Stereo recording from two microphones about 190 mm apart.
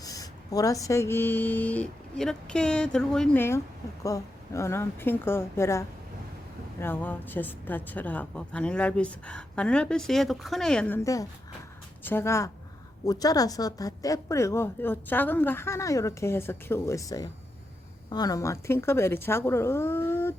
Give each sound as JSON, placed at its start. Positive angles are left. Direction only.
{"t": 0.0, "sound": "a woman's voice", "side_deg": 20}